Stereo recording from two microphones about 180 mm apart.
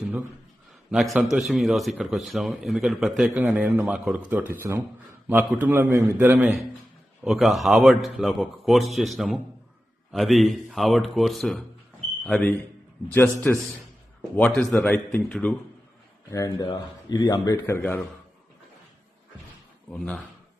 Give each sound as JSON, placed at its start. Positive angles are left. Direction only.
{"t": 0.0, "sound": "a sound", "side_deg": -10}
{"t": 0.9, "sound": "a man's voice", "side_deg": 0}
{"t": 16.3, "sound": "a man's voice", "side_deg": 20}
{"t": 19.9, "sound": "a man's voice", "side_deg": 5}